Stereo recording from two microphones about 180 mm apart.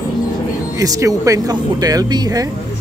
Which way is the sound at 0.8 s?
20° right (ahead or behind).